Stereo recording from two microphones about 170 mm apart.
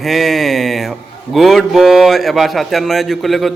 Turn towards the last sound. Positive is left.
turn(degrees=0)  # may be behind; listen again after turning